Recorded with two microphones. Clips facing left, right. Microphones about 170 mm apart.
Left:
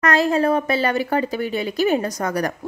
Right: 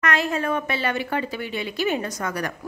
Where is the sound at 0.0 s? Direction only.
35° left (ahead or behind).